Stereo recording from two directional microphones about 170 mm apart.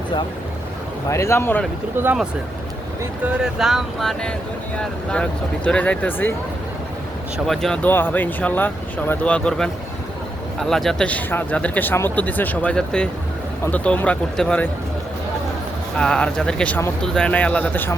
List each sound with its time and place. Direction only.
1.1 s speech: 15° left (ahead or behind)
3.0 s speech: 5° right (ahead or behind); by 6.3 s 10° left (ahead or behind)
7.3 s speech: centre (ahead or behind)
16.0 s speech: 5° left (ahead or behind)